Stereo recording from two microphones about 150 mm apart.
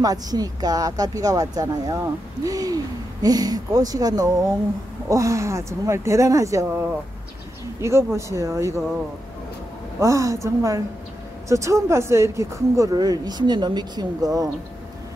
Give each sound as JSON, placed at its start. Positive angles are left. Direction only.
{"t": 0.0, "sound": "speech", "side_deg": -25}
{"t": 9.9, "sound": "speech", "side_deg": -20}